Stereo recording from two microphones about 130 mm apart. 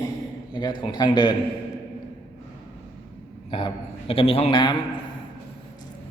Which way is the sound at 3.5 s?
40° left (ahead or behind).